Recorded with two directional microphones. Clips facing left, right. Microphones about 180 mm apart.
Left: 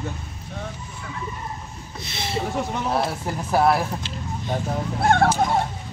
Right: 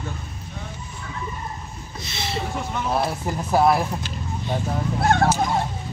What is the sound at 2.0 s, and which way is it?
Speech, 55° left (ahead or behind).